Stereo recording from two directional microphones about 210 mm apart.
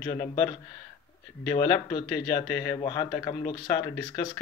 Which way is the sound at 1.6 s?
20° left (ahead or behind).